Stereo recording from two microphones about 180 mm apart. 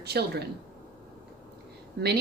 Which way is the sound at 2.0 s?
65° right (ahead or behind).